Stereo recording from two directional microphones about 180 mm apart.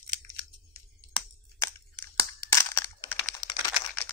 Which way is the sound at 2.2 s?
15° left (ahead or behind).